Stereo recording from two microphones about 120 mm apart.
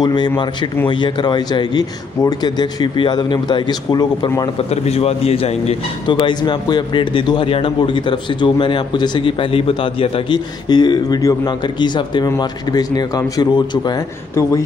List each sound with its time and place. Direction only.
0.0 s a man's voice: 40° left (ahead or behind)
4.6 s a man's voice: 60° left (ahead or behind)
6.0 s a man's voice: 40° left (ahead or behind)